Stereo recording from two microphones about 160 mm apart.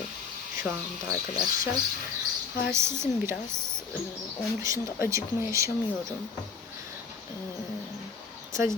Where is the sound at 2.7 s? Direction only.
15° right (ahead or behind).